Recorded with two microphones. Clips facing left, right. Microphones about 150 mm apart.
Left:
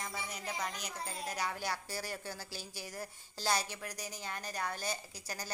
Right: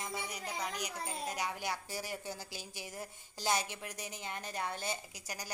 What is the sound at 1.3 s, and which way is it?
A woman's voice, 20° right (ahead or behind).